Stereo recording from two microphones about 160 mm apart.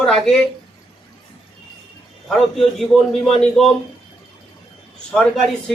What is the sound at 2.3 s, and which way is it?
Speech, centre (ahead or behind).